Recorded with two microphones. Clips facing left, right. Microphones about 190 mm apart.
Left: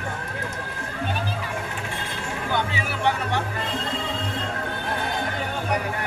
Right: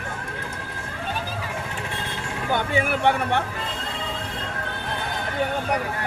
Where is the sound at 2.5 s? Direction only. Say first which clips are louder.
Right 5 dB; 50° right (ahead or behind).